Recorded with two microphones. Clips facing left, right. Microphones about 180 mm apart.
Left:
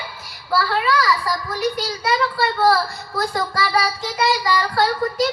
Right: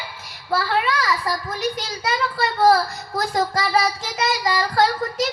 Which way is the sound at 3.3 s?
25° right (ahead or behind).